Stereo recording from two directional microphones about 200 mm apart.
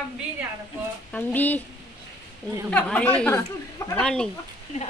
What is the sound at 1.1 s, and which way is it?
Speech, 10° left (ahead or behind).